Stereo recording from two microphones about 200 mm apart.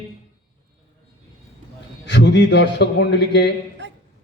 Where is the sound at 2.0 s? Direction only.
60° left (ahead or behind).